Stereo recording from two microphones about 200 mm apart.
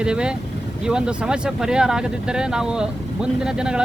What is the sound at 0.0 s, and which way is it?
Speech, 5° right (ahead or behind).